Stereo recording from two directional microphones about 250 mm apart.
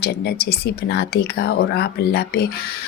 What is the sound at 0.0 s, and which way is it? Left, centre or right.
Speech, left.